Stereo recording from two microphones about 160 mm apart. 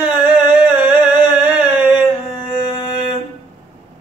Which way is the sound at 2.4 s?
30° left (ahead or behind).